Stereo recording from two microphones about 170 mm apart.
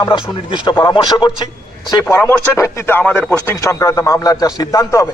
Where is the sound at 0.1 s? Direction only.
35° left (ahead or behind).